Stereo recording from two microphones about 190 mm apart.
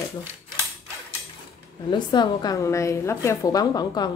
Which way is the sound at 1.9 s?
25° left (ahead or behind).